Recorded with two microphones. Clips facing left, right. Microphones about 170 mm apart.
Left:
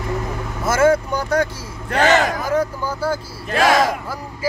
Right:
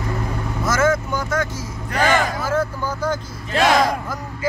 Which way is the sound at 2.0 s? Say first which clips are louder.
Left 2 dB; 15° left (ahead or behind).